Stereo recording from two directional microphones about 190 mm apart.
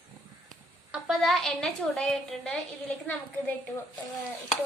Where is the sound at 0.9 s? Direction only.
Centre (ahead or behind).